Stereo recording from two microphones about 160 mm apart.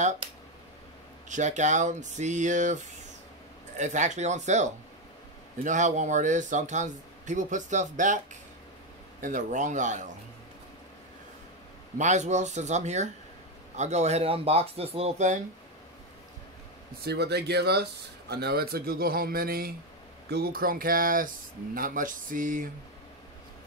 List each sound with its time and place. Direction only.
1.3 s speech: 50° right (ahead or behind)
12.0 s speech: 45° right (ahead or behind)
17.0 s speech: 90° right; by 19.7 s 70° right (ahead or behind)
20.2 s speech: 80° right; by 22.7 s 55° right (ahead or behind)